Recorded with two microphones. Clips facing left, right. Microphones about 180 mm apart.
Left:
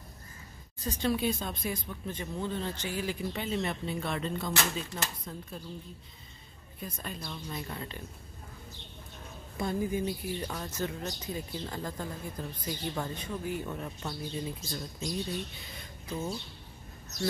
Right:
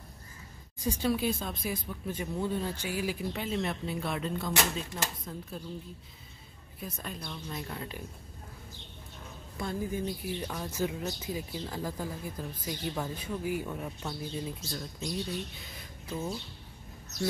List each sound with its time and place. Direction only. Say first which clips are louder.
0.7 s speech: right 1 dB; 10° right (ahead or behind)
6.8 s speech: even; centre (ahead or behind)
9.6 s speech: left 3 dB; 20° left (ahead or behind)
10.0 s speech: left 1 dB; centre (ahead or behind)